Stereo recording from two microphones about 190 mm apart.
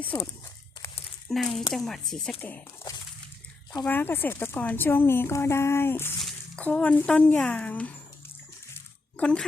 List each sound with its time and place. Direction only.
0.0 s speech: 10° left (ahead or behind)
1.3 s speech: centre (ahead or behind)
9.1 s speech: 5° left (ahead or behind)